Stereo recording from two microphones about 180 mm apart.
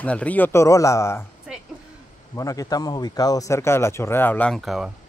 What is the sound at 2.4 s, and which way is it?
A man's voice, 20° left (ahead or behind).